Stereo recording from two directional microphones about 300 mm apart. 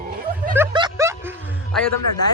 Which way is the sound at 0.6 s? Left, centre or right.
Centre.